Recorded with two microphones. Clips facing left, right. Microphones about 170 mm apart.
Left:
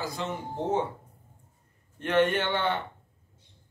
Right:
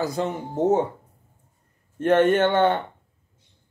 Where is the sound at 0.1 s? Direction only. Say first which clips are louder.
Right 7 dB; 45° right (ahead or behind).